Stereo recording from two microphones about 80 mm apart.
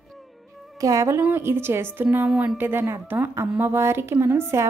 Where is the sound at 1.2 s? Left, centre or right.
Right.